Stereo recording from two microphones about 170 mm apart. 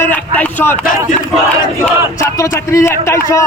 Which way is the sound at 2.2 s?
15° left (ahead or behind).